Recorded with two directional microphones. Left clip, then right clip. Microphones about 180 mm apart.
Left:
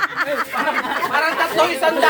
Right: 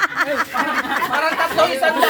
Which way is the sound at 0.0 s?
20° right (ahead or behind).